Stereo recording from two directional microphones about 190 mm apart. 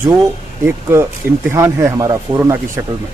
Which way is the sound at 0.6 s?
15° right (ahead or behind).